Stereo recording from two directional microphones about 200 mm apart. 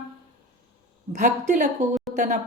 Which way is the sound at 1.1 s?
35° right (ahead or behind).